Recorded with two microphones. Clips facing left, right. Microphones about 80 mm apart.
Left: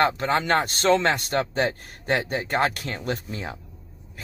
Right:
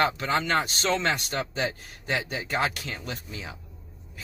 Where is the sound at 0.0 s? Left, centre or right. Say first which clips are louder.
Left 3 dB; left.